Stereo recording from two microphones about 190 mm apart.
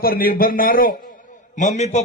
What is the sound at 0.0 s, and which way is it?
A man's voice, 50° left (ahead or behind).